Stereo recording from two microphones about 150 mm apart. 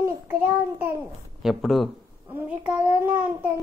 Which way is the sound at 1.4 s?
Centre (ahead or behind).